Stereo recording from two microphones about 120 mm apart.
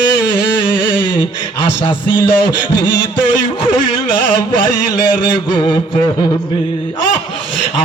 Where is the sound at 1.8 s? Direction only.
40° left (ahead or behind).